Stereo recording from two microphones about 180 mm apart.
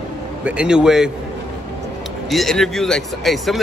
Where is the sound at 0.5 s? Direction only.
5° right (ahead or behind).